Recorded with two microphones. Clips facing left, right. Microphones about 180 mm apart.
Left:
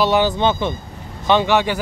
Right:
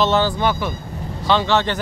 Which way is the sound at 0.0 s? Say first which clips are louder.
Left 1 dB; 15° left (ahead or behind).